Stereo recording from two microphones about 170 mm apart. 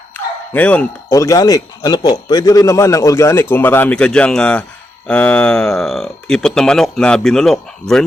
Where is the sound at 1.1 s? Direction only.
20° left (ahead or behind).